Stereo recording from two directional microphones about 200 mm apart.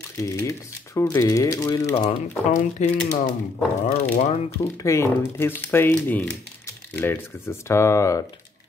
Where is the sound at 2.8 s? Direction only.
35° left (ahead or behind).